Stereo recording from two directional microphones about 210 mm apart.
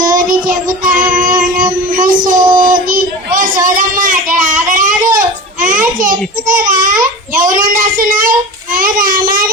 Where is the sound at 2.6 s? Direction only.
40° right (ahead or behind).